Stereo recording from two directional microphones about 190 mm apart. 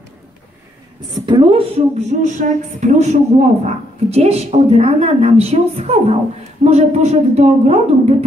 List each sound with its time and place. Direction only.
1.1 s a woman's voice: 25° right (ahead or behind)